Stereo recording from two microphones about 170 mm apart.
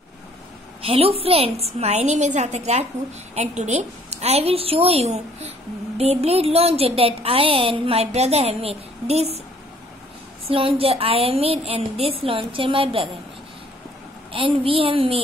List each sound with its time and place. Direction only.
0.8 s a woman's voice: 35° right (ahead or behind)
10.5 s a woman's voice: 30° right (ahead or behind)
14.3 s a woman's voice: 30° right (ahead or behind)